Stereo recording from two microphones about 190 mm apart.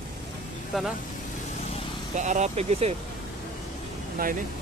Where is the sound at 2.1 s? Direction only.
40° right (ahead or behind).